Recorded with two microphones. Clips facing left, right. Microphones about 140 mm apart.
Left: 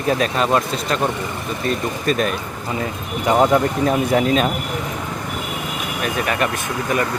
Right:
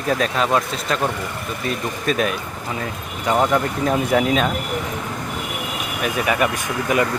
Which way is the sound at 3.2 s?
15° left (ahead or behind).